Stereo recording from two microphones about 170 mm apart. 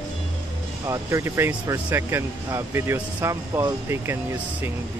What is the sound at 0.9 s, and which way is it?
Speech, 20° right (ahead or behind).